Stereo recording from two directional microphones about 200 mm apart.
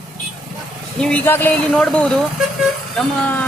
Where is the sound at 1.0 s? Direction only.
10° left (ahead or behind).